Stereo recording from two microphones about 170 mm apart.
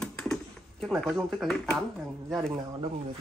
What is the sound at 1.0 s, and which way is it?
Speech, centre (ahead or behind).